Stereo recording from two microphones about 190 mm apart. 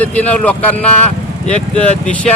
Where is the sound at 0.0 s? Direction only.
10° left (ahead or behind).